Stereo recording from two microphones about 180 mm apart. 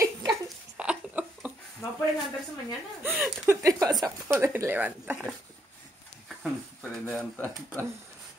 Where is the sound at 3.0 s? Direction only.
10° right (ahead or behind).